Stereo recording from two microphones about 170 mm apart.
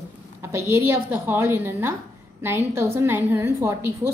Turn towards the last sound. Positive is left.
turn(degrees=-15)  # may be behind; listen again after turning